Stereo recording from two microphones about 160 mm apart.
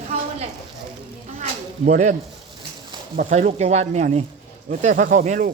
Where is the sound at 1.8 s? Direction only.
50° right (ahead or behind).